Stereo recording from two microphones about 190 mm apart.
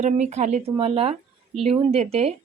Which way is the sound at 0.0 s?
35° right (ahead or behind).